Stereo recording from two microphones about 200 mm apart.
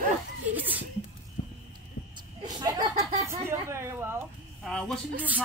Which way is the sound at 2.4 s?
20° right (ahead or behind).